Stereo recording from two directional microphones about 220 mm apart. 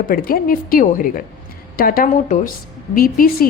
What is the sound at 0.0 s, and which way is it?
A woman's voice, 40° left (ahead or behind).